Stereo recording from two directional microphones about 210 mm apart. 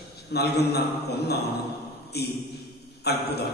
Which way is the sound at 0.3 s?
50° left (ahead or behind).